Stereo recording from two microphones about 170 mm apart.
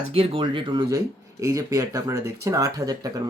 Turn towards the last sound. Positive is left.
turn(degrees=-20)  # may be behind; listen again after turning